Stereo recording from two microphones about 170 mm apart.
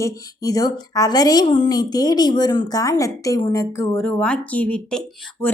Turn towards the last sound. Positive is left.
turn(degrees=5)  # may be behind; listen again after turning